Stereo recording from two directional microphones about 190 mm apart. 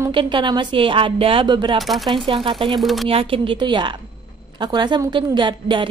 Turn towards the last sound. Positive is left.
turn(degrees=-25)  # may be behind; listen again after turning